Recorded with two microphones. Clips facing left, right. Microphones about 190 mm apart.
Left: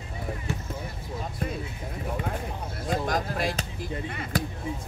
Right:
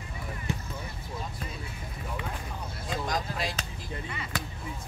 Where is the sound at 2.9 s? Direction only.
50° left (ahead or behind).